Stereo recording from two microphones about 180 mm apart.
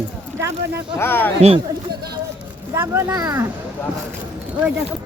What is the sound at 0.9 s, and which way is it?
Speech, 10° left (ahead or behind).